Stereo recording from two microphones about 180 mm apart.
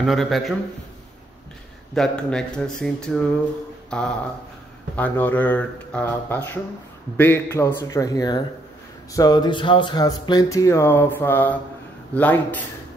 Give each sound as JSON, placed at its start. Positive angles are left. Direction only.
{"t": 0.0, "sound": "speech", "side_deg": 0}
{"t": 2.0, "sound": "speech", "side_deg": 5}